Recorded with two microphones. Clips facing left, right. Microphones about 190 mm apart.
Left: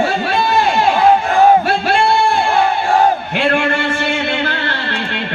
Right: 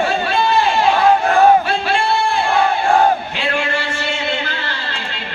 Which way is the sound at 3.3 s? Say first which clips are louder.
Left 5 dB; 55° left (ahead or behind).